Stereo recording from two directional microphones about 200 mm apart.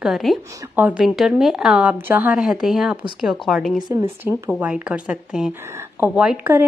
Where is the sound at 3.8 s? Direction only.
20° right (ahead or behind).